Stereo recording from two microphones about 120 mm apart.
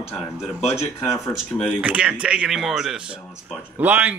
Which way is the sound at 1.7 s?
10° right (ahead or behind).